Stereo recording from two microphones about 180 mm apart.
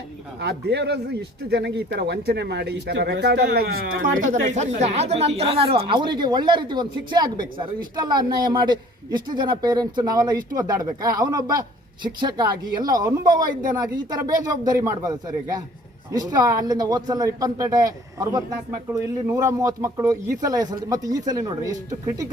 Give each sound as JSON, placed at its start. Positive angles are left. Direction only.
{"t": 0.3, "sound": "a man's voice", "side_deg": -70}